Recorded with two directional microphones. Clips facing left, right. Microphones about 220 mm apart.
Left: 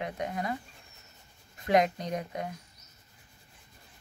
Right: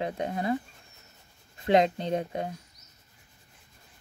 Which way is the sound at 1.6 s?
25° right (ahead or behind).